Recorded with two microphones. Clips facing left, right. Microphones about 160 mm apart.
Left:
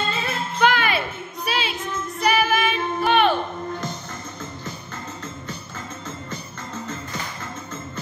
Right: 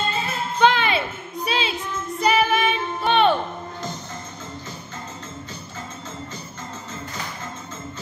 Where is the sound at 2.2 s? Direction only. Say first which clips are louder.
Right 1 dB; 30° right (ahead or behind).